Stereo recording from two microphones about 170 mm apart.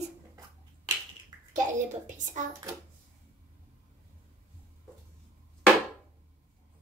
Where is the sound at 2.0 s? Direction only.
45° right (ahead or behind).